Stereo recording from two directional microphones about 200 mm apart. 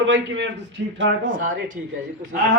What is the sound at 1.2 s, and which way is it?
Speech, 40° right (ahead or behind).